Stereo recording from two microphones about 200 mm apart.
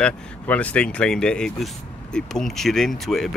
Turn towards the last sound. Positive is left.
turn(degrees=0)  # may be behind; listen again after turning